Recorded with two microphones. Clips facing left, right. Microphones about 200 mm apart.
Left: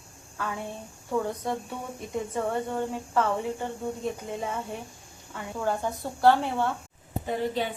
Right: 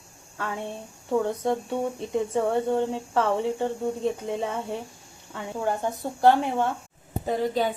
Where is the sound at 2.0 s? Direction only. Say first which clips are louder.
Right 1 dB; 25° right (ahead or behind).